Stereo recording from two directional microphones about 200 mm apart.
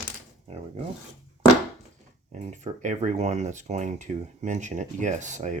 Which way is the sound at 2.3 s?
35° right (ahead or behind).